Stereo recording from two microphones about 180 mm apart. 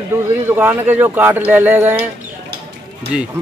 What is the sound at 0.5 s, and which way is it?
Speech, 10° right (ahead or behind).